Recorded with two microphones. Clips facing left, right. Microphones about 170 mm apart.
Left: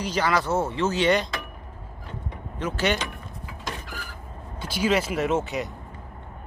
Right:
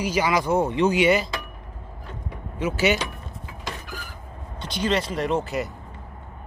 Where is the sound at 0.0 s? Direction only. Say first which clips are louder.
Right 2 dB; 10° right (ahead or behind).